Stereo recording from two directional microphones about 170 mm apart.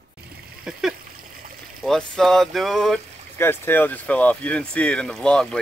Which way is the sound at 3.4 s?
10° left (ahead or behind).